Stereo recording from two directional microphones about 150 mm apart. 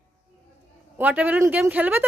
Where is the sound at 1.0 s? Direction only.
10° right (ahead or behind).